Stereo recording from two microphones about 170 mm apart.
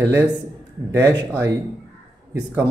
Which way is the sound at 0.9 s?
15° right (ahead or behind).